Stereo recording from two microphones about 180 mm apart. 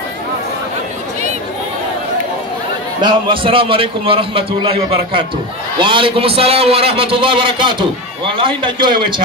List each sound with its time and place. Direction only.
3.0 s a man's voice: 25° right (ahead or behind)